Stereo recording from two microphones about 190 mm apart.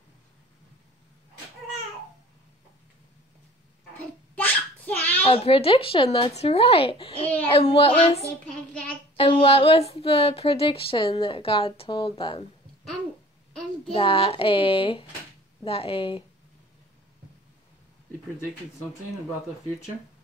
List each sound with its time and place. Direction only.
4.4 s a sound: 10° left (ahead or behind)
5.2 s speech: 30° left (ahead or behind)
7.8 s child singing: 30° left (ahead or behind)
9.1 s speech: 30° left (ahead or behind)
13.9 s speech: 30° left (ahead or behind)